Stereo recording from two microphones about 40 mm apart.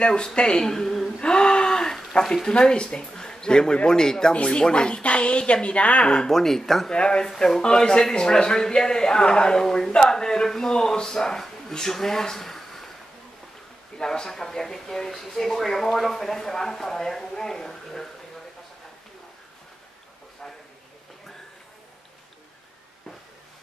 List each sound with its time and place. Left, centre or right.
0.0 s speech: left
1.2 s gasp: left
2.4 s speech: left
6.2 s speech: centre
6.9 s speech: left
7.2 s speech: centre
13.9 s speech: centre